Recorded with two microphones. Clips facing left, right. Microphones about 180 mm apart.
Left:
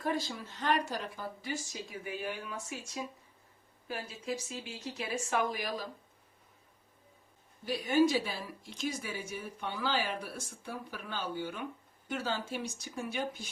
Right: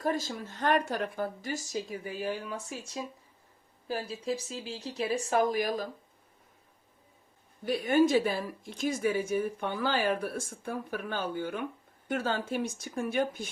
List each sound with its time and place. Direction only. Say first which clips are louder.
0.0 s a woman's voice: right 3 dB; 45° right (ahead or behind)
7.6 s a woman's voice: right 3 dB; 55° right (ahead or behind)